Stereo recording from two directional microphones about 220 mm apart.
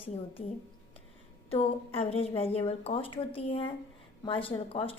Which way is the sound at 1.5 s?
25° left (ahead or behind).